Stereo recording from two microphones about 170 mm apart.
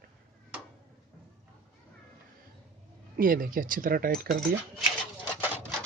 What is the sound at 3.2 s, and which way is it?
Speech, 55° right (ahead or behind).